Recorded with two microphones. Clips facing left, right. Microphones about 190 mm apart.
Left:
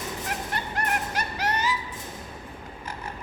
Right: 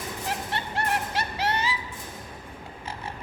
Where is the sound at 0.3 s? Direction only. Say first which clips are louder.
Right 3 dB; 30° right (ahead or behind).